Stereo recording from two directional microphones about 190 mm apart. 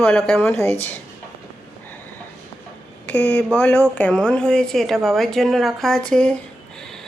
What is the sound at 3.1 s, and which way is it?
A woman's voice, 10° left (ahead or behind).